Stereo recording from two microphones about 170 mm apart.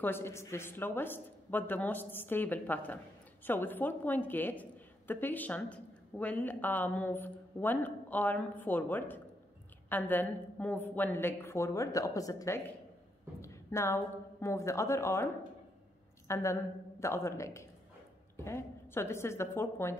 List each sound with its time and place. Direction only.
0.0 s a woman's voice: 15° left (ahead or behind)
16.3 s a woman's voice: 15° left (ahead or behind)